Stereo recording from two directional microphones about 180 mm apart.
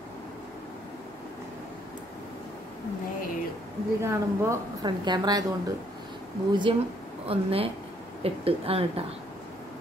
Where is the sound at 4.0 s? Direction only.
15° right (ahead or behind); by 8.8 s 35° right (ahead or behind).